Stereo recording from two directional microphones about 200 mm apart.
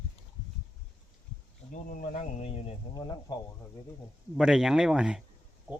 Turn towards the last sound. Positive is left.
turn(degrees=-5)  # may be behind; listen again after turning